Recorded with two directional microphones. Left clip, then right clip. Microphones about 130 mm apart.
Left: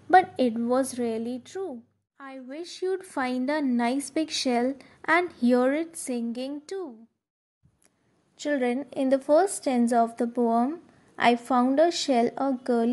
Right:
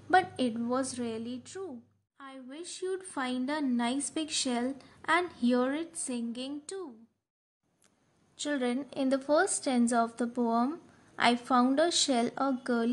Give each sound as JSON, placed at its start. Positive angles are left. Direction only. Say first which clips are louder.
{"t": 0.1, "sound": "a woman's voice", "louder": "left 7 dB", "side_deg": 40}
{"t": 8.4, "sound": "speech", "louder": "left 6 dB", "side_deg": 25}